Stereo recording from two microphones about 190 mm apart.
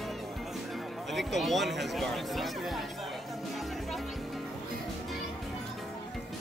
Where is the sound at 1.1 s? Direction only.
Centre (ahead or behind).